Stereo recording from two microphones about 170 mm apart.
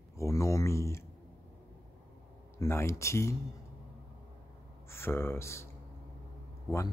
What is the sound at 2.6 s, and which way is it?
Speech, 15° left (ahead or behind).